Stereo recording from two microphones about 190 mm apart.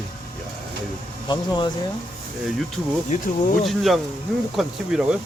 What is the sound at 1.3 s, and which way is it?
Speech, 25° left (ahead or behind).